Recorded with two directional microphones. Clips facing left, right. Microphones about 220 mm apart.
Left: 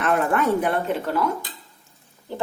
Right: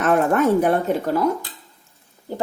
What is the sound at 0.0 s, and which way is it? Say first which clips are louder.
Speech: right 4 dB; 45° right (ahead or behind).